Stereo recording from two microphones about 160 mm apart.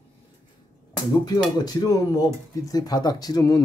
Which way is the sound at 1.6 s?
25° left (ahead or behind).